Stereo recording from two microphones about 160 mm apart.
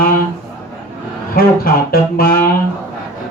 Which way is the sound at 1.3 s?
65° left (ahead or behind).